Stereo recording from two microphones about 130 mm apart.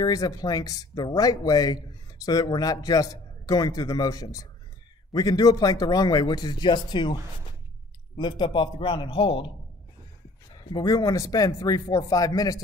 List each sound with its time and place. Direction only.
0.0 s speech: 30° left (ahead or behind)
8.2 s speech: 35° left (ahead or behind)
10.5 s speech: 35° left (ahead or behind)